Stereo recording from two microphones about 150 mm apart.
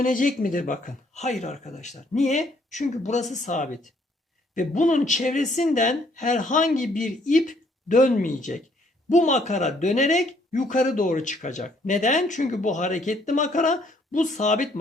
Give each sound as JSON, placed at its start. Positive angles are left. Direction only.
{"t": 0.0, "sound": "speech", "side_deg": 65}